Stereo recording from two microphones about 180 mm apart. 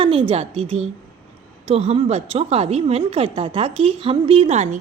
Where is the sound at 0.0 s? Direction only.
30° right (ahead or behind).